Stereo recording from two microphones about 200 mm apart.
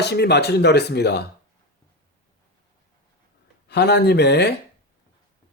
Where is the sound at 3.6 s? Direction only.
55° left (ahead or behind).